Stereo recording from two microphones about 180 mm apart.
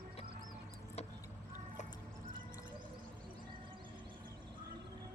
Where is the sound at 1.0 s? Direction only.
35° left (ahead or behind).